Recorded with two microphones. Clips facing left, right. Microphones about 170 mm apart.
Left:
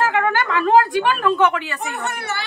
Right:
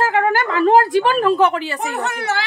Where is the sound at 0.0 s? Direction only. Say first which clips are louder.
Right 2 dB; 35° right (ahead or behind).